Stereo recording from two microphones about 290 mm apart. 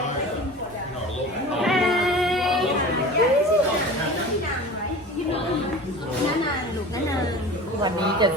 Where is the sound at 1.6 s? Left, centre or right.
Centre.